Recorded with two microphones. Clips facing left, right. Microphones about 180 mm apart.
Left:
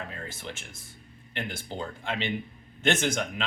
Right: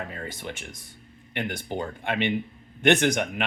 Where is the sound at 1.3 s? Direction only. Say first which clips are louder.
Right 5 dB; 65° right (ahead or behind).